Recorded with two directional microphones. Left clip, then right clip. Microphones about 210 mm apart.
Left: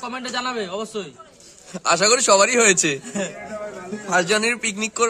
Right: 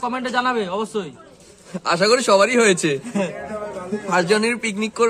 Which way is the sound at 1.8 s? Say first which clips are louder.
Even; 20° left (ahead or behind).